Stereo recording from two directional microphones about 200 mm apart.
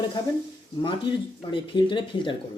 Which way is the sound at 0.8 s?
25° left (ahead or behind).